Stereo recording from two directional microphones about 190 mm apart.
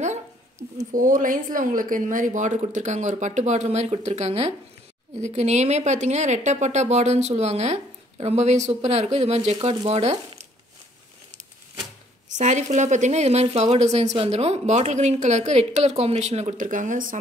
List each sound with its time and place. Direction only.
0.7 s speech: 45° right (ahead or behind)
12.3 s speech: 40° right (ahead or behind)